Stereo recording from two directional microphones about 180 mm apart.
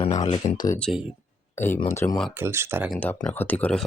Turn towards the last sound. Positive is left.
turn(degrees=5)  # may be behind; listen again after turning